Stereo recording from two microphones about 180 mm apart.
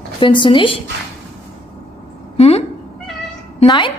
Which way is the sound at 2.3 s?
35° left (ahead or behind).